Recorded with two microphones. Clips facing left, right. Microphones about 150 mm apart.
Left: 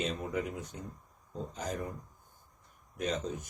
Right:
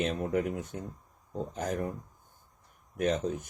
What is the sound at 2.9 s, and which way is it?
Speech, 55° right (ahead or behind).